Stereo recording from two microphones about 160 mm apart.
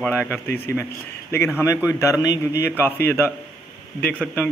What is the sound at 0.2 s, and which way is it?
Speech, 10° left (ahead or behind).